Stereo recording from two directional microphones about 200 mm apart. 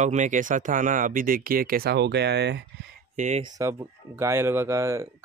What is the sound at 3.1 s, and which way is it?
Speech, 40° right (ahead or behind).